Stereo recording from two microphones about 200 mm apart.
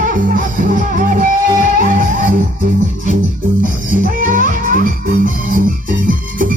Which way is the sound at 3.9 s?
40° right (ahead or behind).